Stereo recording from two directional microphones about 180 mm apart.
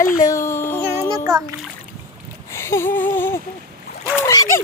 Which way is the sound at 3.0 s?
10° left (ahead or behind).